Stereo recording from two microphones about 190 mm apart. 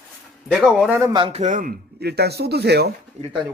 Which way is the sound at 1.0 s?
25° right (ahead or behind).